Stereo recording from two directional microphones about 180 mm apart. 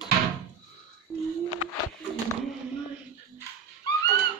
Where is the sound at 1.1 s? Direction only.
5° left (ahead or behind).